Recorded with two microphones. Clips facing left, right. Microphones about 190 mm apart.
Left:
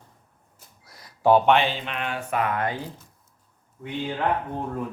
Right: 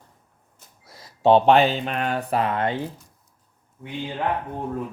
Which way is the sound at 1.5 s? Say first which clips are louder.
Right 4 dB; 40° right (ahead or behind).